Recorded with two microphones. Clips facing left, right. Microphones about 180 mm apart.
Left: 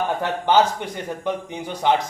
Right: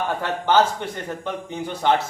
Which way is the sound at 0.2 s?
15° left (ahead or behind).